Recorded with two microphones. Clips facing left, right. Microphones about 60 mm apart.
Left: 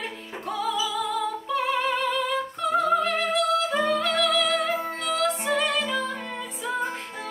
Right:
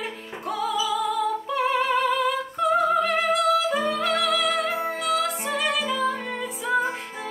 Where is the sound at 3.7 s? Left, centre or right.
Centre.